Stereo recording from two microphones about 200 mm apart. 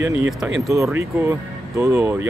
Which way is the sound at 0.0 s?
10° right (ahead or behind).